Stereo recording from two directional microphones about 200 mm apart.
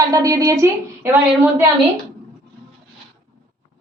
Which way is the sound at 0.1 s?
15° right (ahead or behind).